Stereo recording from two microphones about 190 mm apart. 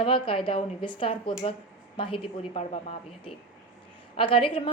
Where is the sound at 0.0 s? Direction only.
25° left (ahead or behind).